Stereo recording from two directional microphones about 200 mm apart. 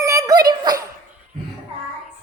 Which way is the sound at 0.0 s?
15° right (ahead or behind).